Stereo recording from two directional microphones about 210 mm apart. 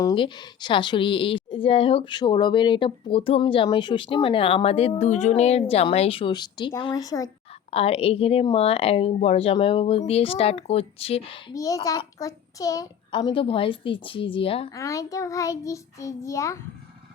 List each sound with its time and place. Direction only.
0.0 s a woman's voice: 20° left (ahead or behind)
7.7 s a woman's voice: 30° left (ahead or behind)
11.5 s a woman's voice: 15° left (ahead or behind)
14.7 s child singing: 15° left (ahead or behind)